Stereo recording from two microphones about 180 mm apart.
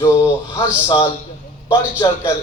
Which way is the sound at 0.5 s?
30° left (ahead or behind).